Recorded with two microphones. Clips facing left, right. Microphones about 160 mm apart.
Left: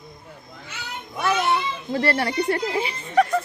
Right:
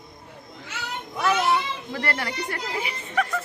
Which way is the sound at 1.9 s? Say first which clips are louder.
Left 7 dB; 30° left (ahead or behind).